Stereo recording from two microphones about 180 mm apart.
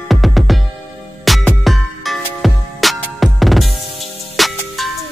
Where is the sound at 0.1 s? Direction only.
Centre (ahead or behind).